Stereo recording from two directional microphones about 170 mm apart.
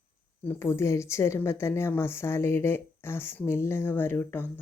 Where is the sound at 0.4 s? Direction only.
15° left (ahead or behind).